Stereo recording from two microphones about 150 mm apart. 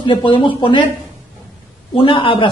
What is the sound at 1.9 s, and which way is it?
Speech, 35° left (ahead or behind).